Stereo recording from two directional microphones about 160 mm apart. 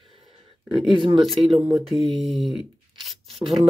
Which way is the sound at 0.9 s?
30° right (ahead or behind).